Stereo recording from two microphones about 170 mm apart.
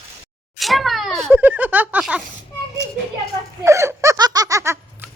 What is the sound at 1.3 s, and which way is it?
Speech, 10° right (ahead or behind).